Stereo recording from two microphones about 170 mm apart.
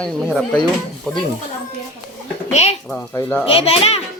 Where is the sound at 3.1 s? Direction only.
10° left (ahead or behind).